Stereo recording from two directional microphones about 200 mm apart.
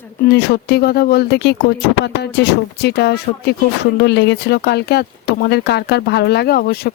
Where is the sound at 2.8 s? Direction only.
55° left (ahead or behind).